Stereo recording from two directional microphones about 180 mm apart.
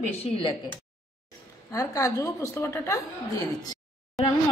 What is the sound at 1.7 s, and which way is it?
A woman's voice, 15° left (ahead or behind).